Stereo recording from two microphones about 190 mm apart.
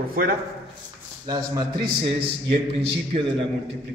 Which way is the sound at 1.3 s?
25° right (ahead or behind).